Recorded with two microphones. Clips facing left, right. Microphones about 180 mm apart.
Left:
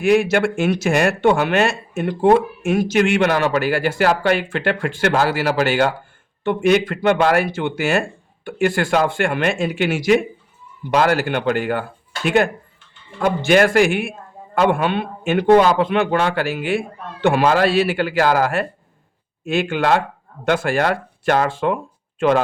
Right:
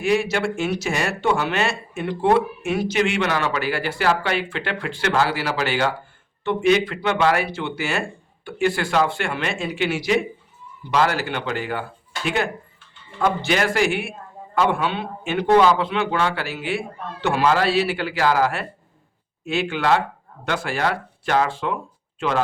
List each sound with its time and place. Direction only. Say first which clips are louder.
0.0 s speech: left 5 dB; 50° left (ahead or behind)